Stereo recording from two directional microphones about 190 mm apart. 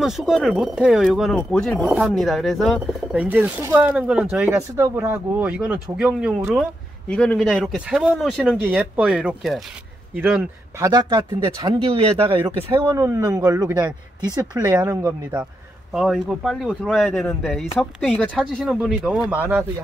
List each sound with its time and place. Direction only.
0.0 s speech: centre (ahead or behind)
8.6 s speech: 10° right (ahead or behind); by 12.6 s 30° right (ahead or behind)
12.8 s speech: 15° right (ahead or behind)
15.9 s speech: centre (ahead or behind)